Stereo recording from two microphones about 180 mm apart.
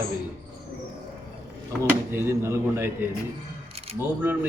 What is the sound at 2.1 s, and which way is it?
Speech, 15° right (ahead or behind).